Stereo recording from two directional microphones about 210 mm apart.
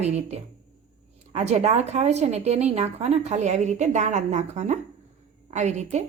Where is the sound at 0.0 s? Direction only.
30° right (ahead or behind).